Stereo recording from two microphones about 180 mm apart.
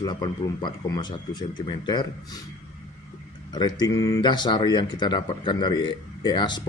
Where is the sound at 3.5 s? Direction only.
25° left (ahead or behind).